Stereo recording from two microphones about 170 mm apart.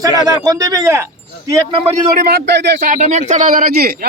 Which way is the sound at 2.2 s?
70° right (ahead or behind).